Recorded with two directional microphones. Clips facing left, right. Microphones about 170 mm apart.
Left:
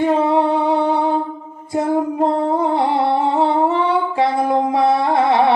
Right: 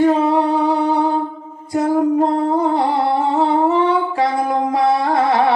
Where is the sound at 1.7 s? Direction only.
25° left (ahead or behind).